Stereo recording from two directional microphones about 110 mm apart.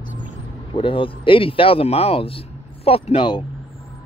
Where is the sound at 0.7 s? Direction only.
50° left (ahead or behind).